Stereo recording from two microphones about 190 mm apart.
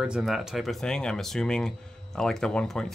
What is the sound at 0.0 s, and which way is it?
Speech, 5° right (ahead or behind).